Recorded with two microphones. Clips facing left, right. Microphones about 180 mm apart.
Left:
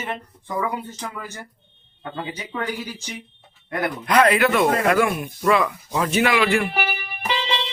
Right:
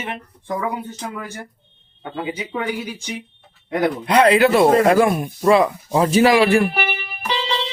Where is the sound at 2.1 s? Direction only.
15° right (ahead or behind).